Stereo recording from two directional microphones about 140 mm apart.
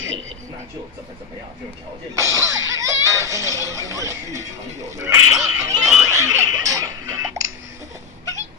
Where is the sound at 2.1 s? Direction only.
20° right (ahead or behind).